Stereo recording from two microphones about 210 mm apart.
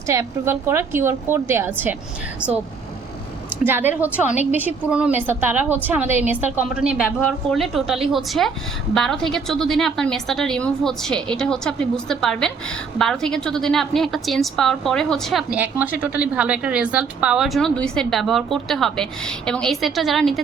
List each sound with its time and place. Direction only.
0.1 s a woman's voice: 15° right (ahead or behind)
3.6 s a woman's voice: 10° right (ahead or behind)